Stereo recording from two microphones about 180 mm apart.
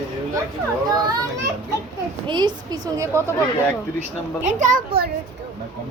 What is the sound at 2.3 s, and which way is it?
A woman's voice, 25° right (ahead or behind).